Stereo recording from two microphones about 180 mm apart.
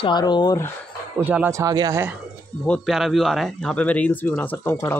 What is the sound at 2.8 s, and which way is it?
Speech, centre (ahead or behind).